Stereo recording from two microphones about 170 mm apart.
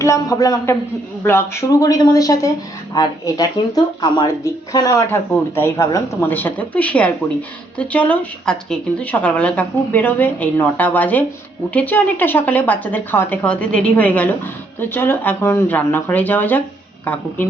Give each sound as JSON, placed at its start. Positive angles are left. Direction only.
{"t": 0.0, "sound": "a woman's voice", "side_deg": 20}